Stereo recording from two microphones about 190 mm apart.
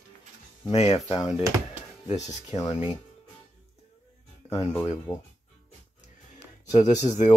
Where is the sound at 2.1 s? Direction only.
35° left (ahead or behind).